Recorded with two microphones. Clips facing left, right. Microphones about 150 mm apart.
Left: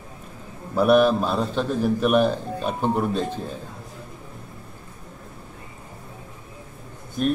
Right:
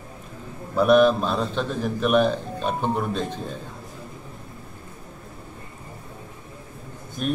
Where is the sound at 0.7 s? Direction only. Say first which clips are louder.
Even; 5° left (ahead or behind).